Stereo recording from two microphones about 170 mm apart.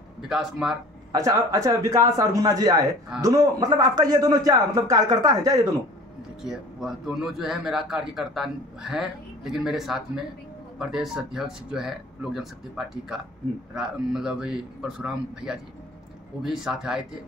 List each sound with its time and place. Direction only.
0.3 s a man's voice: centre (ahead or behind)
1.1 s a man's voice: 20° right (ahead or behind)
6.4 s a man's voice: centre (ahead or behind)